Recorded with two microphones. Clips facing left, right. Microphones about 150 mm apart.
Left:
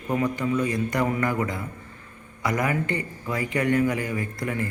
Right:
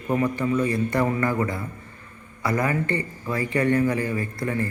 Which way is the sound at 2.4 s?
15° left (ahead or behind).